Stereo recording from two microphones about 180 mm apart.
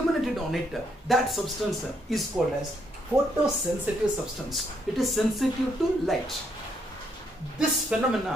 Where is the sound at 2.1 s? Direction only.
Centre (ahead or behind).